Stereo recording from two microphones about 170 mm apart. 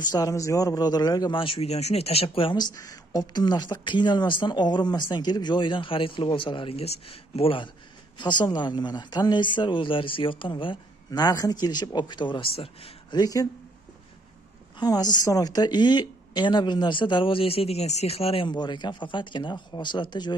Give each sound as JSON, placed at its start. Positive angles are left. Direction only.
{"t": 0.0, "sound": "a man's voice", "side_deg": 20}
{"t": 13.2, "sound": "a man's voice", "side_deg": 20}
{"t": 14.8, "sound": "a man's voice", "side_deg": 25}